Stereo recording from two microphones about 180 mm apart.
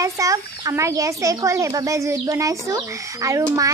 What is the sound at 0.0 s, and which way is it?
A child's voice, 20° right (ahead or behind).